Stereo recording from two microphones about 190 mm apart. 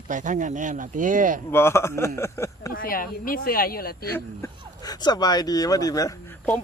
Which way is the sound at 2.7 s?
50° left (ahead or behind).